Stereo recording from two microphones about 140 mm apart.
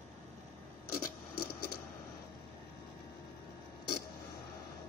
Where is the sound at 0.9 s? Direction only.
90° left.